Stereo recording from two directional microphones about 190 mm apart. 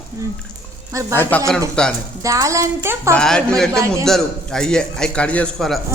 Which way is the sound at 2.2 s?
15° right (ahead or behind).